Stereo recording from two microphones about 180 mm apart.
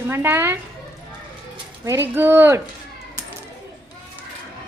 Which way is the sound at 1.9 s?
10° right (ahead or behind).